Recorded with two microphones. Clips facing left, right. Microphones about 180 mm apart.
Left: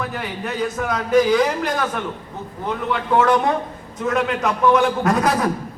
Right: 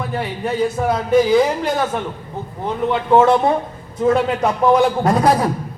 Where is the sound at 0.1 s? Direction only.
30° right (ahead or behind).